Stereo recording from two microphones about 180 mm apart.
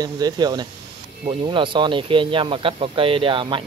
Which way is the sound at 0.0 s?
20° right (ahead or behind).